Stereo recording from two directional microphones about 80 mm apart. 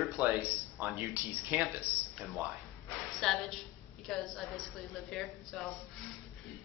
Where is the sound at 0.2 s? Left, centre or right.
Centre.